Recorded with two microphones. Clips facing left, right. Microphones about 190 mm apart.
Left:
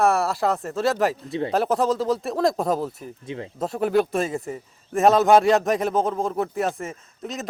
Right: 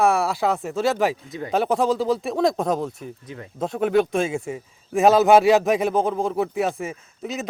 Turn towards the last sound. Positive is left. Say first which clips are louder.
# right 2 dB
turn(degrees=0)  # may be behind; listen again after turning